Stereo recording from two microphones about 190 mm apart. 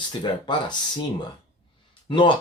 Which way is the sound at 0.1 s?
25° left (ahead or behind).